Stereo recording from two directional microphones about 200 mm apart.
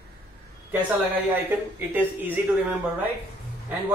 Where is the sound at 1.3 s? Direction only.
10° right (ahead or behind).